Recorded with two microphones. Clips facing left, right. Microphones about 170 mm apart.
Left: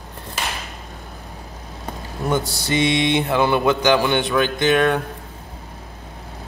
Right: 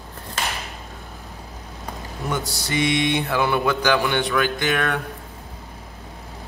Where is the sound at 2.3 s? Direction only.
25° left (ahead or behind).